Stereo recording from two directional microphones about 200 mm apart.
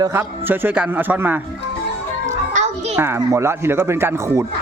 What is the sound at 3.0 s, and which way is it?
Speech, 15° right (ahead or behind).